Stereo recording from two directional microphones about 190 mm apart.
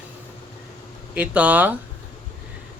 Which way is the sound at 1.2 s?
5° right (ahead or behind).